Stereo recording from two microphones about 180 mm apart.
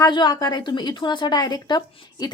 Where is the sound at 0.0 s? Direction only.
25° left (ahead or behind).